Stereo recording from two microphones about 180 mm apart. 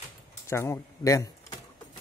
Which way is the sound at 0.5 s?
15° left (ahead or behind).